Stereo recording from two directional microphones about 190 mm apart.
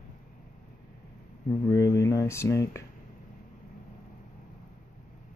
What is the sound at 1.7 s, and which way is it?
Speech, 15° left (ahead or behind).